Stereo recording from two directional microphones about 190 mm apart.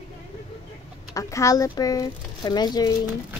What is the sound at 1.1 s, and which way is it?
Speech, 15° left (ahead or behind).